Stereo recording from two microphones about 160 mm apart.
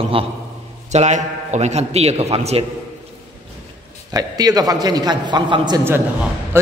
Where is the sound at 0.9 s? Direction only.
45° right (ahead or behind).